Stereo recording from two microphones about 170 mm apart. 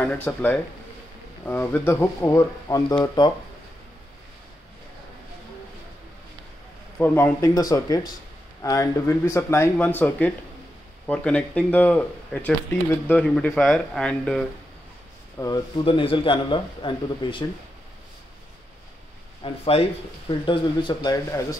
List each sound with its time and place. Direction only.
0.0 s speech: 10° left (ahead or behind)
7.0 s speech: 15° left (ahead or behind)
15.3 s speech: 20° left (ahead or behind)
15.8 s speech: 30° left (ahead or behind)
19.4 s speech: 35° left (ahead or behind); by 21.5 s 20° left (ahead or behind)